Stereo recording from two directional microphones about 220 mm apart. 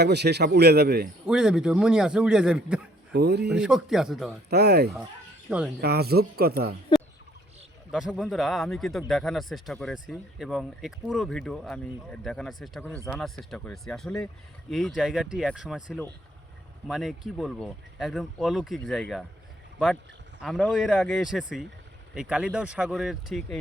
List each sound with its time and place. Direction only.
0.0 s speech: 50° right (ahead or behind)
1.3 s speech: 5° right (ahead or behind)
3.1 s speech: 50° right (ahead or behind)
3.5 s speech: 5° right (ahead or behind)
4.4 s speech: 45° right (ahead or behind)
5.5 s speech: 5° right (ahead or behind)
5.8 s speech: 45° right (ahead or behind)
7.9 s speech: centre (ahead or behind)
20.4 s speech: centre (ahead or behind)